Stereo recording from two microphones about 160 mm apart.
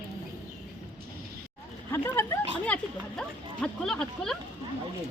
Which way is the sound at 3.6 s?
5° left (ahead or behind).